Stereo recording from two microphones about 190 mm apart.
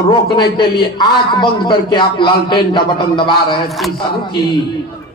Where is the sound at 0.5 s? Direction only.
25° left (ahead or behind).